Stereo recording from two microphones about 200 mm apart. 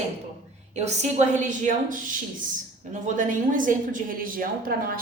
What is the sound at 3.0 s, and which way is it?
A woman's voice, 40° right (ahead or behind).